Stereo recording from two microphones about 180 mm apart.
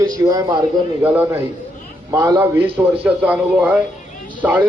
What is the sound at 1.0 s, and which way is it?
Speech, 10° right (ahead or behind).